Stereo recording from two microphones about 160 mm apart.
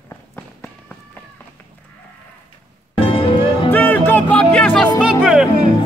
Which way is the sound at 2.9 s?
35° left (ahead or behind).